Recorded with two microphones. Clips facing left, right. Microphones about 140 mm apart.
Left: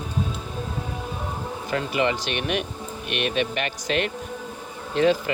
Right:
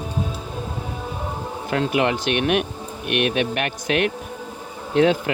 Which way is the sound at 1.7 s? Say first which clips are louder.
Right 3 dB; 55° right (ahead or behind).